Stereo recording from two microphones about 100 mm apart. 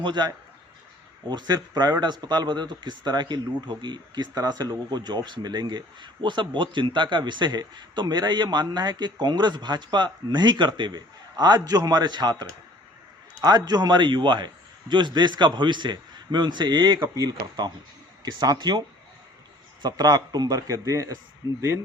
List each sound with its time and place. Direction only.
0.0 s a man's voice: 50° right (ahead or behind)
19.8 s a man's voice: 40° right (ahead or behind)